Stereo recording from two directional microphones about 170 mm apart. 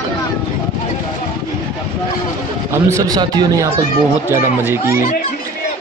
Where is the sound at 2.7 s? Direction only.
15° right (ahead or behind).